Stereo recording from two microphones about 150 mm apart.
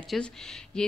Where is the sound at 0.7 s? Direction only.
5° left (ahead or behind).